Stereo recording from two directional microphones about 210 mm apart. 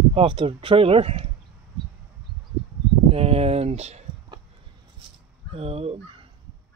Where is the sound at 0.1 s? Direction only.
25° right (ahead or behind).